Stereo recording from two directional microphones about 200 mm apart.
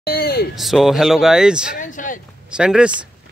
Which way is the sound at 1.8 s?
40° left (ahead or behind).